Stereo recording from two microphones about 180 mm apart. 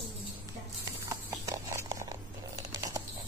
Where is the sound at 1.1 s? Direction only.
20° right (ahead or behind).